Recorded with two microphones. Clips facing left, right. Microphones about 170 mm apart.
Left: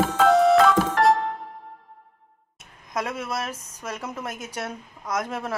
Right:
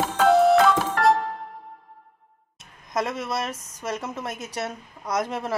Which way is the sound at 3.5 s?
30° left (ahead or behind).